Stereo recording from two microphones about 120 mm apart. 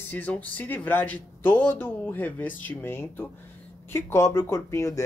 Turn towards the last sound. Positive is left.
turn(degrees=25)  # may be behind; listen again after turning